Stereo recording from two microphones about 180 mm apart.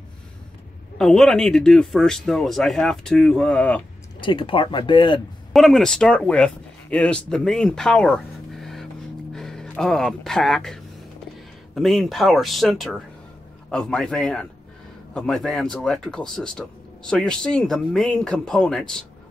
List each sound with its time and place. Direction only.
0.9 s speech: centre (ahead or behind)
4.2 s speech: 30° left (ahead or behind)
5.5 s speech: centre (ahead or behind)